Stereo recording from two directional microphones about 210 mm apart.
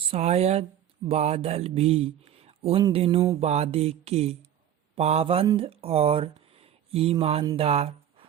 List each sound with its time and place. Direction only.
0.1 s speech: 30° right (ahead or behind)